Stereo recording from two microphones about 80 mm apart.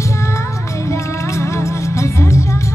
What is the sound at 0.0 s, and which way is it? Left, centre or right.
Music, left.